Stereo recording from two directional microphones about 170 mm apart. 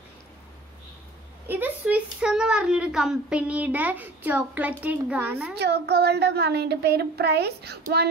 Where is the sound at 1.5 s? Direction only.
10° right (ahead or behind).